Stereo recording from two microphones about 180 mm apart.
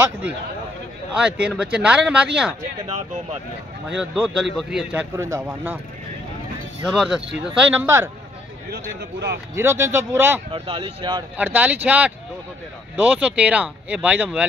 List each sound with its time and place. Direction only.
1.1 s speech: 5° right (ahead or behind)
3.9 s speech: 5° right (ahead or behind)
5.1 s speech: 15° right (ahead or behind)
6.8 s speech: centre (ahead or behind)
9.6 s speech: 15° right (ahead or behind)
10.5 s speech: 30° right (ahead or behind)
11.3 s speech: 10° right (ahead or behind)